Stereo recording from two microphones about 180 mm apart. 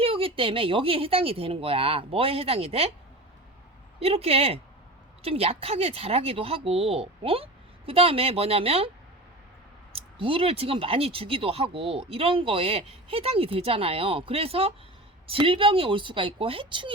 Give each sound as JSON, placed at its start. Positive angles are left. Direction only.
{"t": 0.0, "sound": "speech", "side_deg": -30}
{"t": 4.0, "sound": "speech", "side_deg": -35}
{"t": 9.9, "sound": "speech", "side_deg": -30}